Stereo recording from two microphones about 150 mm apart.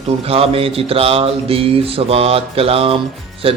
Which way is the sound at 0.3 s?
40° right (ahead or behind).